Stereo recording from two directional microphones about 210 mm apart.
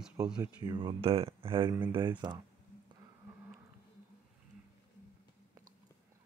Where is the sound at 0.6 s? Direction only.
20° right (ahead or behind).